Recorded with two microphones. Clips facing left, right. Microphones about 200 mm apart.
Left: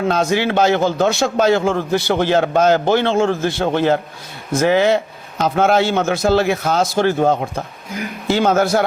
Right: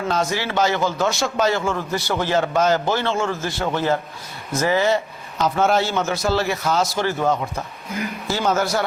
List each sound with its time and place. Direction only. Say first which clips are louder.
0.1 s a man's voice: left 4 dB; 60° left (ahead or behind)